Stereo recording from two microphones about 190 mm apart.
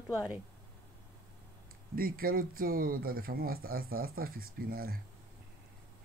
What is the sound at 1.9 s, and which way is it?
Speech, 50° right (ahead or behind).